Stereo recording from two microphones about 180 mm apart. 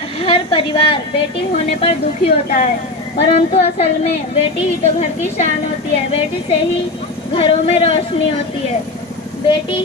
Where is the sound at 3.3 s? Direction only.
35° left (ahead or behind).